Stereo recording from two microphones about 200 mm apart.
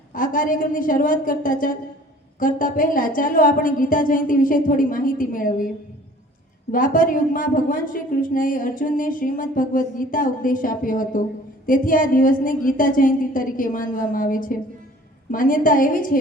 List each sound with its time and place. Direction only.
0.1 s a woman's voice: 45° left (ahead or behind)
6.7 s a woman's voice: 45° left (ahead or behind)